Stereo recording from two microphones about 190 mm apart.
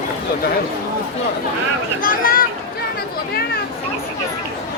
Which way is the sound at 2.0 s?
50° left (ahead or behind).